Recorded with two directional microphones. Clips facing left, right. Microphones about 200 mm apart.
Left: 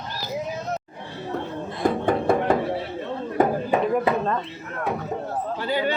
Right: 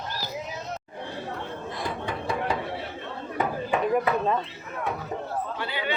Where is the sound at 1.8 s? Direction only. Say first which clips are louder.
Left 12 dB; 50° left (ahead or behind).